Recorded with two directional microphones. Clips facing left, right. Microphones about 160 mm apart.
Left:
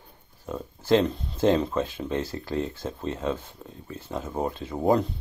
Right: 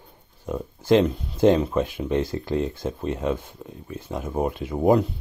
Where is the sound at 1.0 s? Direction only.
5° right (ahead or behind).